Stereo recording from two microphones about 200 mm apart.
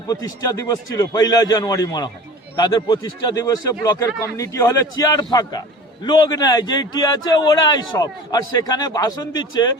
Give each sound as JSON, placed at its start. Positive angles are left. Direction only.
{"t": 0.1, "sound": "a man's voice", "side_deg": 20}